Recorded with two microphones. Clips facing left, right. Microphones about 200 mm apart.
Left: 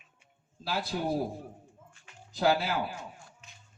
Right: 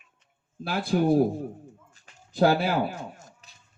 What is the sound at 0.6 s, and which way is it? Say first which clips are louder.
Speech: right 8 dB; 50° right (ahead or behind).